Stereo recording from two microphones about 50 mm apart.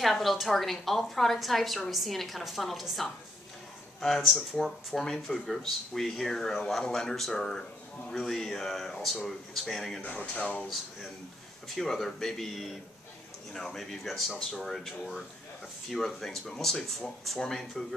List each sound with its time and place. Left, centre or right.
0.0 s a woman's voice: centre
10.0 s speech: left
11.7 s a woman's voice: centre